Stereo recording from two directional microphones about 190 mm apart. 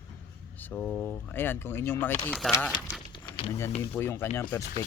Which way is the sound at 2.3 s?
Centre (ahead or behind).